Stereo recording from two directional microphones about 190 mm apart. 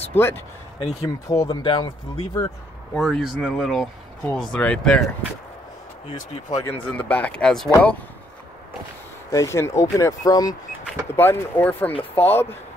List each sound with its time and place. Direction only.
0.1 s speech: 10° left (ahead or behind)
2.9 s speech: centre (ahead or behind)
6.5 s speech: 10° left (ahead or behind)
9.3 s speech: 15° left (ahead or behind)